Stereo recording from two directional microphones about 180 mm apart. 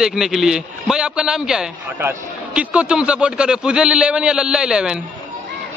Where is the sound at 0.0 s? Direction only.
5° right (ahead or behind).